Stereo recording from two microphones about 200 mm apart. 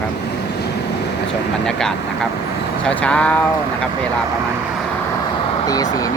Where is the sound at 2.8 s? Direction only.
5° left (ahead or behind).